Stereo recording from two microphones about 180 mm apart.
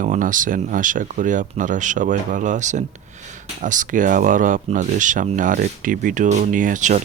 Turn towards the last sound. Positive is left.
turn(degrees=-45)  # may be behind; listen again after turning